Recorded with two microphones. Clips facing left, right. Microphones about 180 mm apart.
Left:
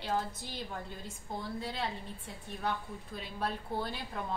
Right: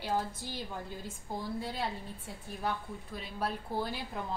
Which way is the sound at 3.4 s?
5° right (ahead or behind).